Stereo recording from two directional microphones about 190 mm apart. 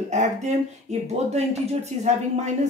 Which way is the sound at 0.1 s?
40° right (ahead or behind).